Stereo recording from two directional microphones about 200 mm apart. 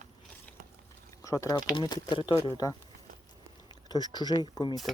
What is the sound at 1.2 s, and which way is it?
Speech, 15° left (ahead or behind).